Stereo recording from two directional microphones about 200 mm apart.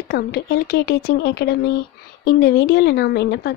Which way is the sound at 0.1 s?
55° left (ahead or behind).